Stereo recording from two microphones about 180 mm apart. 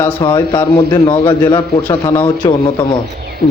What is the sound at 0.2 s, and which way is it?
A man's voice, 25° left (ahead or behind).